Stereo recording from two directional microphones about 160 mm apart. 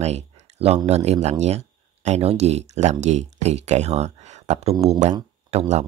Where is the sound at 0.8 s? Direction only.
40° right (ahead or behind).